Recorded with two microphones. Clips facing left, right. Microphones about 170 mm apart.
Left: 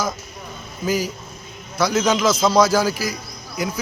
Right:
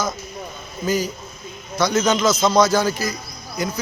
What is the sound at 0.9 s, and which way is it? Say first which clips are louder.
A man's voice: even; 5° left (ahead or behind).